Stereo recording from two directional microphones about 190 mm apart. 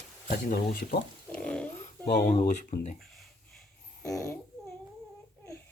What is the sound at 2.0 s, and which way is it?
Speech, 60° left (ahead or behind).